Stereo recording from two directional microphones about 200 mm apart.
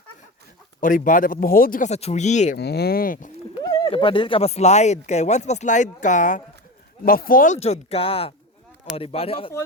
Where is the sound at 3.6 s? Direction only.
20° left (ahead or behind).